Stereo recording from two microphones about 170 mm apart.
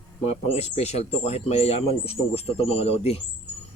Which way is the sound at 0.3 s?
40° left (ahead or behind).